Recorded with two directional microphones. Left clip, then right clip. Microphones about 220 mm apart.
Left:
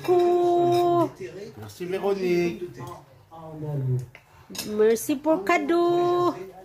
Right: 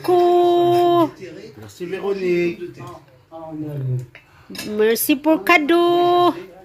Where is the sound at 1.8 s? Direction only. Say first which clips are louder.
Right 3 dB; 15° left (ahead or behind).